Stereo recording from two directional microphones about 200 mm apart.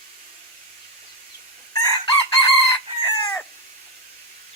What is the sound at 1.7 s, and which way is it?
Chicken, 15° left (ahead or behind).